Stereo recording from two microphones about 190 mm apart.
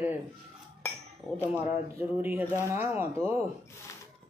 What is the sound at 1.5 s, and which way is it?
A man's voice, 10° right (ahead or behind).